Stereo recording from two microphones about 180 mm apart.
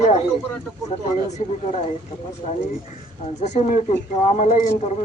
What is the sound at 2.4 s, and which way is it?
Speech, 35° left (ahead or behind).